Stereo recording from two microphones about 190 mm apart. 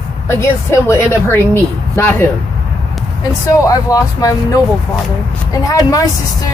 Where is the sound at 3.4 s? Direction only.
20° left (ahead or behind).